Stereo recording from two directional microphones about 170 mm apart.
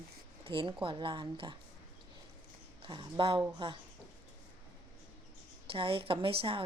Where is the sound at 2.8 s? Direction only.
30° right (ahead or behind).